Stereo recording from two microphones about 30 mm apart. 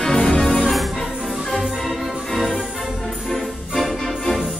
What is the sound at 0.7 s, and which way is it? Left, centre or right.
Music, centre.